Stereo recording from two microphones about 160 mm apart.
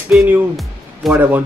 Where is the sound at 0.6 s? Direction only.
Centre (ahead or behind).